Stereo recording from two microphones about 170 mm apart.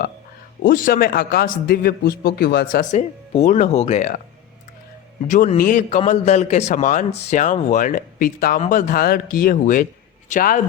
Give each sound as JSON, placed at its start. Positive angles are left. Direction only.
{"t": 0.6, "sound": "a man's voice", "side_deg": 55}
{"t": 2.9, "sound": "speech", "side_deg": 40}
{"t": 5.3, "sound": "speech", "side_deg": 50}